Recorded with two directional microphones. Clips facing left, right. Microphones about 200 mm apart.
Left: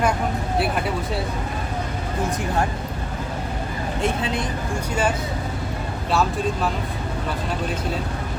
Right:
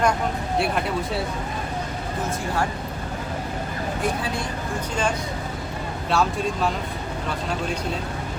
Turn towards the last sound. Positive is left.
turn(degrees=0)  # may be behind; listen again after turning